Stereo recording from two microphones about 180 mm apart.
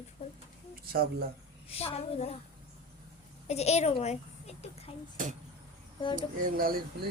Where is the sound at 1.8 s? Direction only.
35° left (ahead or behind).